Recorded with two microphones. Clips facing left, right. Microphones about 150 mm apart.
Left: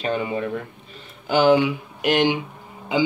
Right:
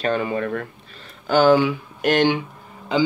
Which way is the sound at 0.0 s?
15° left (ahead or behind).